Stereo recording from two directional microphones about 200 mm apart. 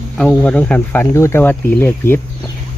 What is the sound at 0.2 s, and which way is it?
Speech, 5° left (ahead or behind).